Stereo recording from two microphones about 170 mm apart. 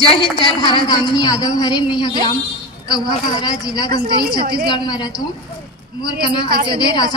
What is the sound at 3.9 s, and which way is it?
Speech, 65° right (ahead or behind).